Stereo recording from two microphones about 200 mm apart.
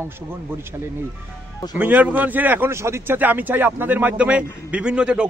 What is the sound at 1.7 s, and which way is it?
A man's voice, 10° right (ahead or behind).